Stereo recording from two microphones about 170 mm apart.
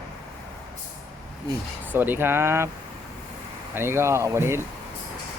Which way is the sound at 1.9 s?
10° right (ahead or behind).